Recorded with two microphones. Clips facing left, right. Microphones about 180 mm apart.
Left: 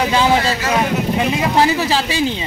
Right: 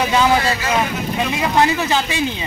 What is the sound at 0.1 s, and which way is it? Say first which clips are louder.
Speech: left 1 dB; 30° left (ahead or behind).